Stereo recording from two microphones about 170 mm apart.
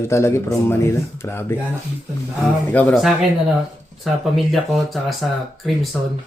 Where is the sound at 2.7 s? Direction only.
10° left (ahead or behind).